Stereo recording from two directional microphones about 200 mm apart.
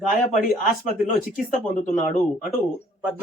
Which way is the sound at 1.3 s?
40° left (ahead or behind).